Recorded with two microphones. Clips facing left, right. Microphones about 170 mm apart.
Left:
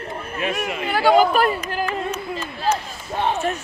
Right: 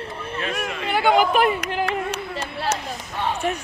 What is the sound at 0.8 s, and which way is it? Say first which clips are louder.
Chatter: left 3 dB; 20° right (ahead or behind).